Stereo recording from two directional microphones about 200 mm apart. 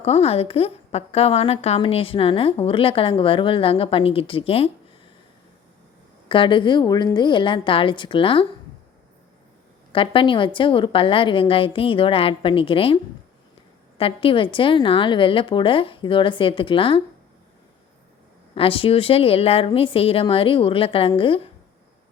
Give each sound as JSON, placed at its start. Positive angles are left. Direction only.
{"t": 0.0, "sound": "a woman's voice", "side_deg": 30}
{"t": 6.2, "sound": "a woman's voice", "side_deg": 25}
{"t": 9.9, "sound": "a woman's voice", "side_deg": 25}
{"t": 14.0, "sound": "a woman's voice", "side_deg": 25}
{"t": 18.5, "sound": "a woman's voice", "side_deg": 25}